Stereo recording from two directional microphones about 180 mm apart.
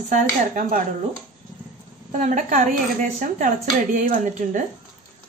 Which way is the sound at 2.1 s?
45° right (ahead or behind).